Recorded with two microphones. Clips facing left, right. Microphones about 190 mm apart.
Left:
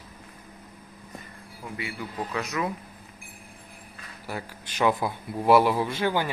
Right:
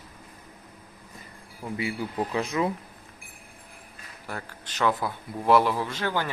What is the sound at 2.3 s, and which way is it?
Speech, 30° right (ahead or behind).